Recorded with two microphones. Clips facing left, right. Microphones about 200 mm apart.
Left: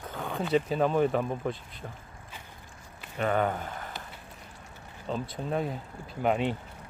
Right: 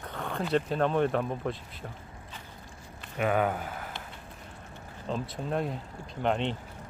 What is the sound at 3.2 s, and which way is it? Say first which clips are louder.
Speech: even; 5° right (ahead or behind).